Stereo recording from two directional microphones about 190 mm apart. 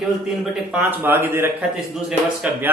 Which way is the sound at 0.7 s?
10° right (ahead or behind).